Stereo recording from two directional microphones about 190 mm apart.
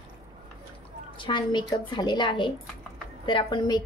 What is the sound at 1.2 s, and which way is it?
A woman's voice, 25° left (ahead or behind).